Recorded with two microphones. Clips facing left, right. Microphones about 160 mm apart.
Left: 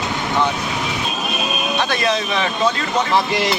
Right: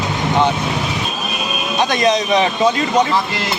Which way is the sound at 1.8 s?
20° right (ahead or behind).